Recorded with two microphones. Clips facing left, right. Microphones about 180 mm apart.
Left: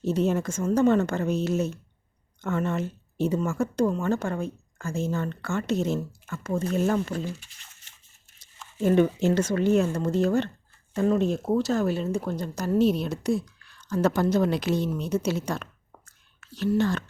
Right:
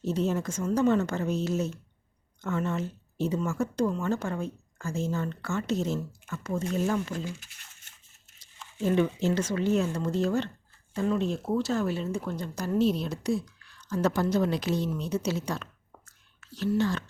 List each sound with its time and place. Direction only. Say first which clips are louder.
0.0 s a woman's voice: left 4 dB; 60° left (ahead or behind)
8.8 s a woman's voice: left 4 dB; 50° left (ahead or behind)
16.6 s a woman's voice: left 3 dB; 55° left (ahead or behind)